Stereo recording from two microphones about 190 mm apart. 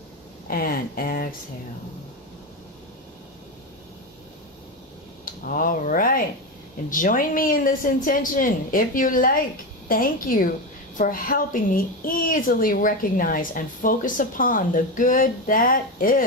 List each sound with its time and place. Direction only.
0.5 s speech: 50° left (ahead or behind)
5.2 s a woman's voice: 45° left (ahead or behind)